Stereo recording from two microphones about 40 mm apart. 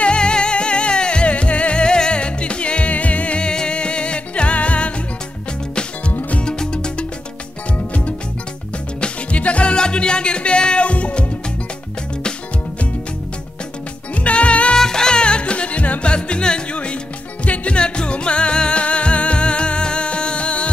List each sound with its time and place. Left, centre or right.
0.0 s music: left
6.4 s music: left
9.0 s music: left
14.2 s music: left
14.8 s music: centre; by 16.1 s left
16.1 s music: left